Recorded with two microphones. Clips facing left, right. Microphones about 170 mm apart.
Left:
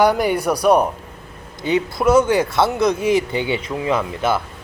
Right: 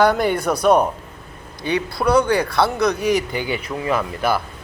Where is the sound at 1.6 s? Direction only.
20° left (ahead or behind).